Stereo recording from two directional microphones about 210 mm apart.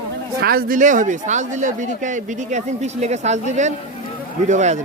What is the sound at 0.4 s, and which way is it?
Speech, 45° right (ahead or behind).